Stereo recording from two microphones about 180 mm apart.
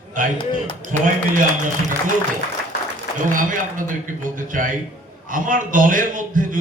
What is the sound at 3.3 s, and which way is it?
A man's voice, 50° right (ahead or behind).